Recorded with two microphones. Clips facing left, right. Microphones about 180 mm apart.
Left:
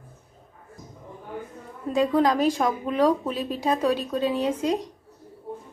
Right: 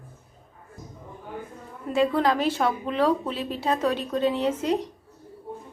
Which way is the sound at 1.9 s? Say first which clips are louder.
Left 1 dB; 15° left (ahead or behind).